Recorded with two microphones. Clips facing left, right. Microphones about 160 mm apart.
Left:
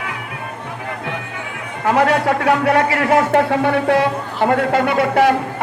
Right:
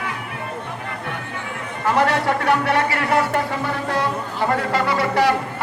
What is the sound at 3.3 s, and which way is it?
Speech, 65° left (ahead or behind).